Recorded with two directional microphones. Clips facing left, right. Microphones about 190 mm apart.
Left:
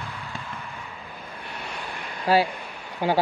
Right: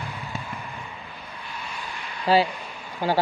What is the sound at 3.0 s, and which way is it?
Speech, 20° left (ahead or behind).